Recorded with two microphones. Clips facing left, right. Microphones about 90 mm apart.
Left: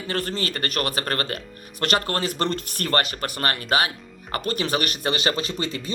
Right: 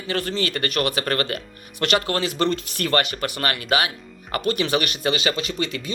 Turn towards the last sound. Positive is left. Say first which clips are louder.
# right 1 dB
turn(degrees=35)  # may be behind; listen again after turning